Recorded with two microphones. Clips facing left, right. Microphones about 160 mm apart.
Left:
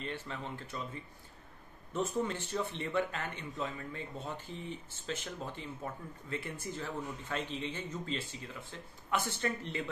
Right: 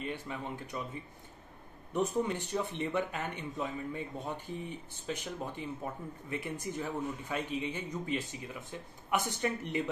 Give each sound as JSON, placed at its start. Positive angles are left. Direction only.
{"t": 0.0, "sound": "speech", "side_deg": -15}
{"t": 2.0, "sound": "speech", "side_deg": -15}